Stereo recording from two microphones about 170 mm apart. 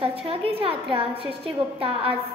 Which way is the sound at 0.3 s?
35° right (ahead or behind).